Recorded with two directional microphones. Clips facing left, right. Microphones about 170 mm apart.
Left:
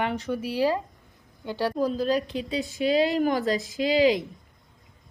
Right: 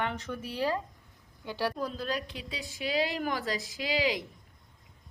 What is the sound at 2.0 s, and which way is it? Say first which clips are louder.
A woman's voice: left 10 dB; 25° left (ahead or behind).